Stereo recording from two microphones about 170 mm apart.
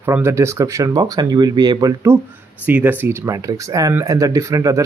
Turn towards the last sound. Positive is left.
turn(degrees=-20)  # may be behind; listen again after turning